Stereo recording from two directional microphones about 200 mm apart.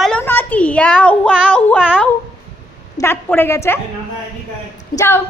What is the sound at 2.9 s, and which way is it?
Speech, 10° left (ahead or behind).